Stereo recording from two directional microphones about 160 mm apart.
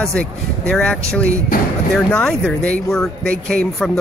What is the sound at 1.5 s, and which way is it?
Speech, 60° left (ahead or behind).